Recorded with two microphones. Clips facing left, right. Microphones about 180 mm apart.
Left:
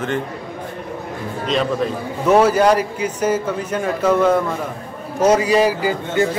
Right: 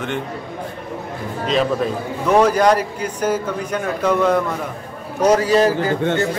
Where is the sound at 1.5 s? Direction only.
Centre (ahead or behind).